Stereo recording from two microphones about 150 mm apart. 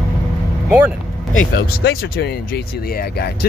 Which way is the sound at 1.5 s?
90° left.